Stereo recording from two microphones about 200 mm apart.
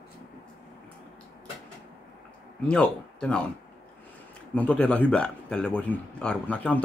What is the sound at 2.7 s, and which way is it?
Speech, 5° left (ahead or behind).